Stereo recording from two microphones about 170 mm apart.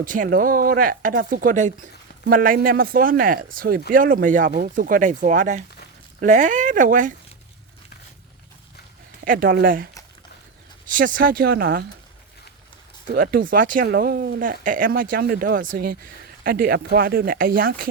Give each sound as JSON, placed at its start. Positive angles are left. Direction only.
{"t": 0.0, "sound": "speech", "side_deg": -50}
{"t": 9.2, "sound": "speech", "side_deg": -55}
{"t": 10.9, "sound": "speech", "side_deg": -55}
{"t": 13.1, "sound": "speech", "side_deg": -60}